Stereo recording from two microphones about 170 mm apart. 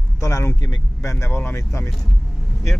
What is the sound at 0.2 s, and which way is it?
Speech, 15° left (ahead or behind).